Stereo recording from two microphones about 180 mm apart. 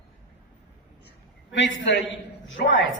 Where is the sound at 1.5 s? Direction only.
85° left.